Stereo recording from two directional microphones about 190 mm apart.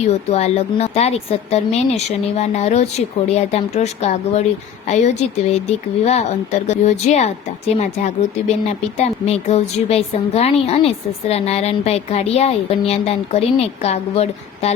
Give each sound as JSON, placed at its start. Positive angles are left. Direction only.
{"t": 0.0, "sound": "speech", "side_deg": 35}